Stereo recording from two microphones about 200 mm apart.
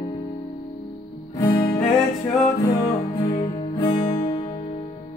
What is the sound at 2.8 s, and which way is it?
Music, 25° left (ahead or behind).